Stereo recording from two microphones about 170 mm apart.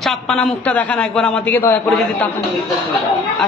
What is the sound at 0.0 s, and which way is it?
A man's voice, centre (ahead or behind).